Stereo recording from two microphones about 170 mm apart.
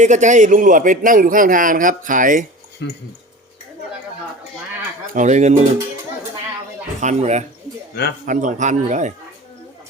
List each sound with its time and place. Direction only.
0.0 s a man's voice: 45° right (ahead or behind)
2.8 s speech: 90° left
5.1 s a man's voice: 45° right (ahead or behind)
7.0 s a man's voice: 40° right (ahead or behind)